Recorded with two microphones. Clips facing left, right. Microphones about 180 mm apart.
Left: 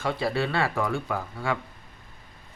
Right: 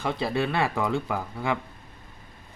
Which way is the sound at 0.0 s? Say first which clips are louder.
Even; 20° right (ahead or behind).